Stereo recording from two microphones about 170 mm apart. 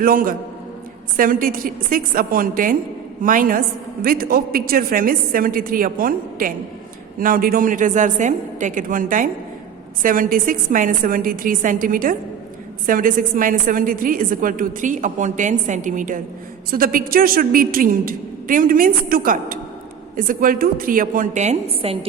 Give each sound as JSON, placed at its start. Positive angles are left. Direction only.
{"t": 0.0, "sound": "a woman's voice", "side_deg": -55}